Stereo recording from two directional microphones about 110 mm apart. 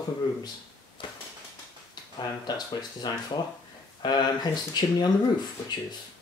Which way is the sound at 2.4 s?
40° left (ahead or behind).